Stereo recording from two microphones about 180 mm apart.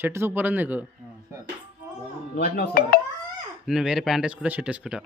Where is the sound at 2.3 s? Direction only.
60° left (ahead or behind).